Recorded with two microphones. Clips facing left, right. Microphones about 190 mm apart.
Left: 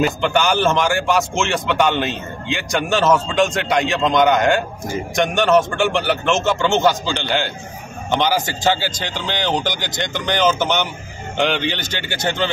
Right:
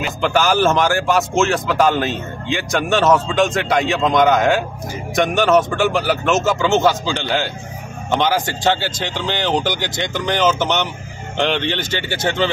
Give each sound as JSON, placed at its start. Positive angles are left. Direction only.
{"t": 0.2, "sound": "a man's voice", "side_deg": 0}